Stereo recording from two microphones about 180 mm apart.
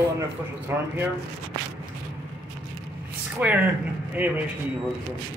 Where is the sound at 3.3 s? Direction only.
10° right (ahead or behind).